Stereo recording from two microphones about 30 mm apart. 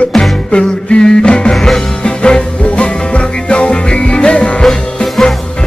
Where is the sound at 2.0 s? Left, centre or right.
Left.